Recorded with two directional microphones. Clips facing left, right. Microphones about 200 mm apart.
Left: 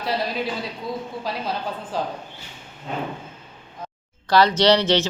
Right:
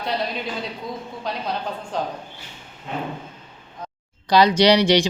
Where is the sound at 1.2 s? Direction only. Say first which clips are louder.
Right 4 dB; 5° left (ahead or behind).